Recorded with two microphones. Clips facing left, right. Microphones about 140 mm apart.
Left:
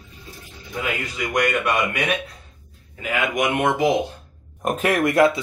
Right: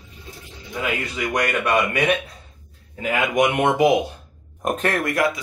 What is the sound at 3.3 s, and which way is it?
Speech, 25° right (ahead or behind).